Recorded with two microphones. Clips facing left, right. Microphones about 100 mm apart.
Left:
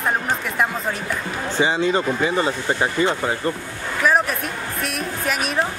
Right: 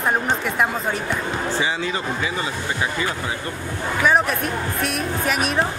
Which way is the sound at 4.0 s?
Centre (ahead or behind).